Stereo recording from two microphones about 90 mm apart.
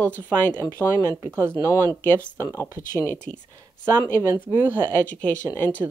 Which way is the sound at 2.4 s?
25° left (ahead or behind).